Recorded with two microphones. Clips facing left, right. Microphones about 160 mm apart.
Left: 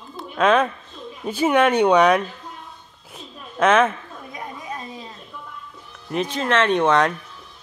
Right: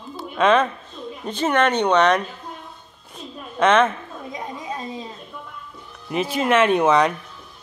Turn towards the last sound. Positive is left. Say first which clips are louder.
# right 1 dB
turn(degrees=0)  # may be behind; listen again after turning